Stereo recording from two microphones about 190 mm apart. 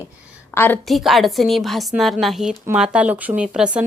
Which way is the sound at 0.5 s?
10° left (ahead or behind).